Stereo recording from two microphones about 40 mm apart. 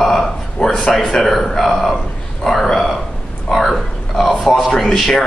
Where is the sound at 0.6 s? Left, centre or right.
Centre.